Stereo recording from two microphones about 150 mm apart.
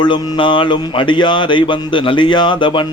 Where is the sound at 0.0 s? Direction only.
35° left (ahead or behind).